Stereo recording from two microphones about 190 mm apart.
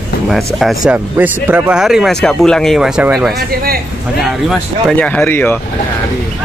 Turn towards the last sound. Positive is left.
turn(degrees=10)  # may be behind; listen again after turning